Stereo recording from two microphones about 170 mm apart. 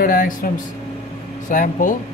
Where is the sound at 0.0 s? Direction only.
55° left (ahead or behind).